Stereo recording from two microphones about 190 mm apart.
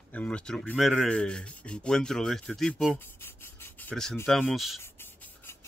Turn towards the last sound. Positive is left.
turn(degrees=10)  # may be behind; listen again after turning